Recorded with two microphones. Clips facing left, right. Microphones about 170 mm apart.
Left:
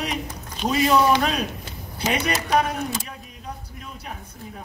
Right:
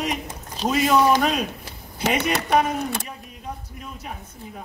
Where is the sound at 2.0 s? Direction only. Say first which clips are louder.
Right 2 dB; 65° right (ahead or behind).